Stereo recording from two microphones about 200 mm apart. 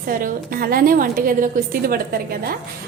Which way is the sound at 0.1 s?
45° right (ahead or behind).